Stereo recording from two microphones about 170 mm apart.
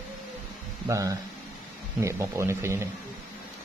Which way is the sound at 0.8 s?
20° right (ahead or behind).